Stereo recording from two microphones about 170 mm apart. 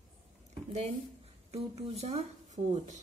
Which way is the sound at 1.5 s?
40° right (ahead or behind).